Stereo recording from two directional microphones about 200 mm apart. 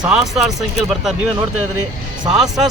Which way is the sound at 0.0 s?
5° right (ahead or behind).